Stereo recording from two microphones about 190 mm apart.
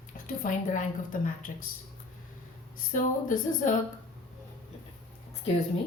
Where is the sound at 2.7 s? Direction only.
45° left (ahead or behind).